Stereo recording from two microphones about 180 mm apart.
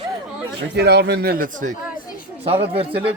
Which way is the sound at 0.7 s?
70° right (ahead or behind).